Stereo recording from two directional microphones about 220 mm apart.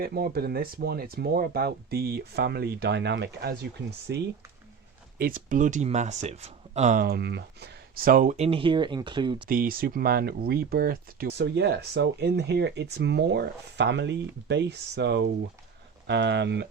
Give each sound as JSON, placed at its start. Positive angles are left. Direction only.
{"t": 0.0, "sound": "speech", "side_deg": -45}
{"t": 5.1, "sound": "speech", "side_deg": -40}
{"t": 9.5, "sound": "speech", "side_deg": -40}